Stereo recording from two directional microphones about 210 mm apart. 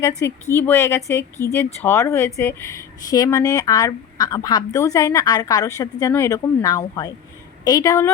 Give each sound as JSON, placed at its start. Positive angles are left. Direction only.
{"t": 0.0, "sound": "speech", "side_deg": 15}